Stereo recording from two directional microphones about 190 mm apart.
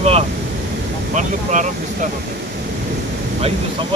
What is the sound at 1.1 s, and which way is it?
Speech, 40° right (ahead or behind).